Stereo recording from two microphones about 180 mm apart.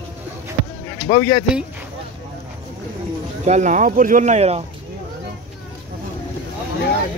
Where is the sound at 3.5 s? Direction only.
40° right (ahead or behind).